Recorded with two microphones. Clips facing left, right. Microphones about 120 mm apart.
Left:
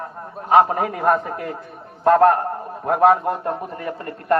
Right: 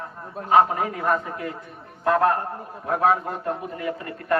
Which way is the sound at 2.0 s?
45° left (ahead or behind).